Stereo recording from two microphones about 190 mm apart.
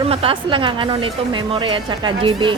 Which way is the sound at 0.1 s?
30° right (ahead or behind).